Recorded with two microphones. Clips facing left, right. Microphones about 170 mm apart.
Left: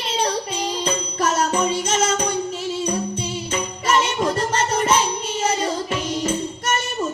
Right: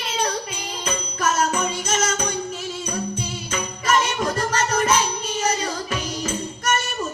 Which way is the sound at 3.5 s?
30° left (ahead or behind).